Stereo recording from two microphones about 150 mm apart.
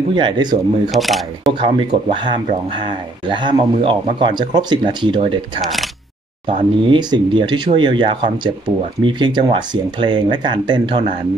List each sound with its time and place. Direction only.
0.1 s speech: 30° right (ahead or behind)
0.9 s speech: centre (ahead or behind)
1.6 s speech: 35° right (ahead or behind)
5.6 s speech: centre (ahead or behind)
6.9 s speech: 30° right (ahead or behind)